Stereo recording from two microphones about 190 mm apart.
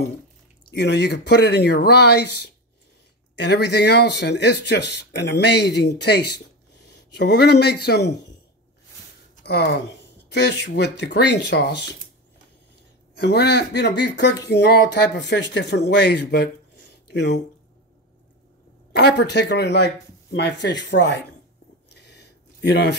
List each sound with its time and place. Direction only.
0.7 s speech: 65° left (ahead or behind)
9.4 s speech: 60° left (ahead or behind)
13.1 s speech: 60° left (ahead or behind)
16.9 s a sound: 60° left (ahead or behind)
18.9 s speech: 60° left (ahead or behind)
21.9 s a sound: 65° left (ahead or behind)